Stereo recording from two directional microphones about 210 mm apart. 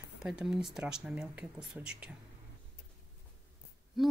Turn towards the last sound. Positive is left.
turn(degrees=0)  # may be behind; listen again after turning